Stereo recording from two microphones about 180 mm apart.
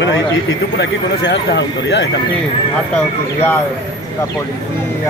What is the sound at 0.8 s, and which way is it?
Speech, 75° left (ahead or behind).